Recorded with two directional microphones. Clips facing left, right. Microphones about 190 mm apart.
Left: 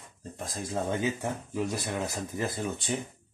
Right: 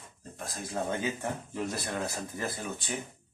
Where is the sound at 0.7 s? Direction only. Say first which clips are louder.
Left 2 dB; 20° left (ahead or behind).